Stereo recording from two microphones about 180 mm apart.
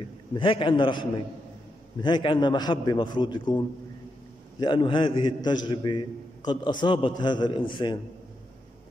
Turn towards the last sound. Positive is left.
turn(degrees=25)  # may be behind; listen again after turning